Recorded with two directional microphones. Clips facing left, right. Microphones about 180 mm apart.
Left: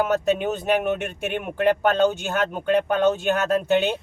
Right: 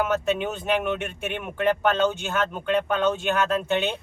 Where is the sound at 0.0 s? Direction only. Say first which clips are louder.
Left 3 dB; 40° left (ahead or behind).